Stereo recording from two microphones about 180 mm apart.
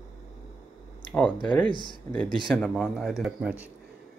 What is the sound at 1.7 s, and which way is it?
Speech, 25° left (ahead or behind).